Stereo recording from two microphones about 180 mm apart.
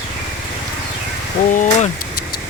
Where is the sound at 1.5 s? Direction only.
45° left (ahead or behind).